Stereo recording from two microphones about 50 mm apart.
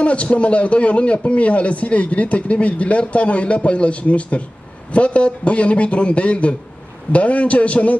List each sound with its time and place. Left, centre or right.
0.0 s a man's voice: left